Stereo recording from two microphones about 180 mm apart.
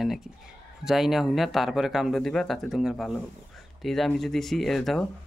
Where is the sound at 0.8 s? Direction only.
Centre (ahead or behind).